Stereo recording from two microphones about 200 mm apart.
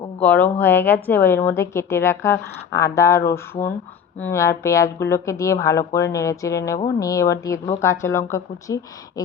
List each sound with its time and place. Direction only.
0.2 s a woman's voice: 10° left (ahead or behind)